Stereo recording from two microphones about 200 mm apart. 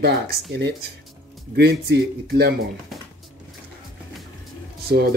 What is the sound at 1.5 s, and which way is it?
Speech, 55° right (ahead or behind).